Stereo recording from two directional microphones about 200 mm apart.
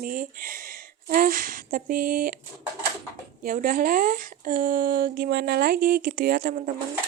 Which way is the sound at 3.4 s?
45° right (ahead or behind).